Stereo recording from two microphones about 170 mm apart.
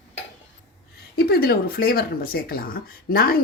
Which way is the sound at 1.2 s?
65° left (ahead or behind).